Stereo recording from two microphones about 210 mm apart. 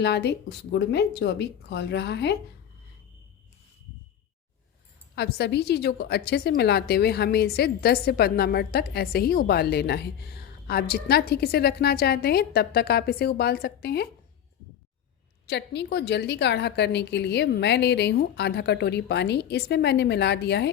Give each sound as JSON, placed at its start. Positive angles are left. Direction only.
{"t": 0.0, "sound": "a woman's voice", "side_deg": 55}
{"t": 5.1, "sound": "a woman's voice", "side_deg": 50}
{"t": 15.4, "sound": "a woman's voice", "side_deg": 55}